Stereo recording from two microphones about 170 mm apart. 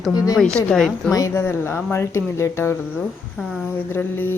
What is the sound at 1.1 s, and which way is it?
A woman's voice, 20° left (ahead or behind).